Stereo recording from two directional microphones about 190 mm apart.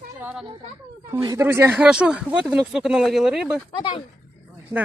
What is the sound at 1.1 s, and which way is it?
Speech, 15° right (ahead or behind).